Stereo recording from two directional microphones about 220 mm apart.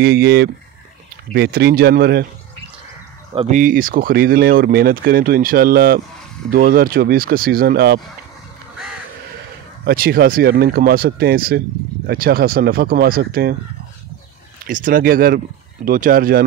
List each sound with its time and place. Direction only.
0.0 s speech: 45° right (ahead or behind)
3.4 s speech: 35° right (ahead or behind)
9.8 s speech: 45° right (ahead or behind)
14.7 s speech: 40° right (ahead or behind)